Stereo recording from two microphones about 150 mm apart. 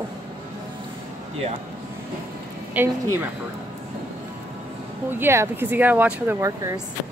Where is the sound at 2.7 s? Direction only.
15° right (ahead or behind).